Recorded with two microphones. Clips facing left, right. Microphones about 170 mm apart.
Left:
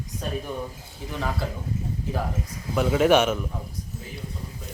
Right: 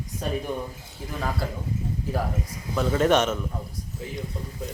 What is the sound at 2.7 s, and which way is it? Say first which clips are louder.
Speech: left 2 dB; 10° left (ahead or behind).